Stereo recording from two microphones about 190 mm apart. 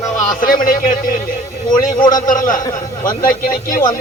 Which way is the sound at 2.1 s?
45° left (ahead or behind).